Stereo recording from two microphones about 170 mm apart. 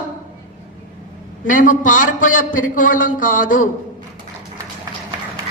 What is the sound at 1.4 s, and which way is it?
A man's voice, 50° left (ahead or behind).